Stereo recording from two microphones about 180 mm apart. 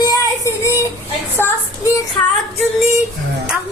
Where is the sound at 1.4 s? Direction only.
10° left (ahead or behind).